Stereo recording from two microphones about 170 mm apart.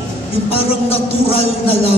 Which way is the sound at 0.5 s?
35° left (ahead or behind).